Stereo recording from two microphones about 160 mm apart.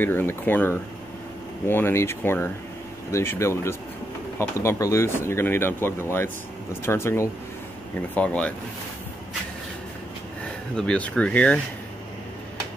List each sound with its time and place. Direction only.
0.0 s speech: 10° left (ahead or behind)
10.8 s speech: 5° left (ahead or behind)